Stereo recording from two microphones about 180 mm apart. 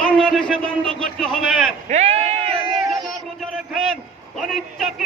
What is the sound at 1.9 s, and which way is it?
Bleat, 40° right (ahead or behind).